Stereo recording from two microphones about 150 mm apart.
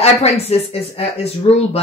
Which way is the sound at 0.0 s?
45° left (ahead or behind).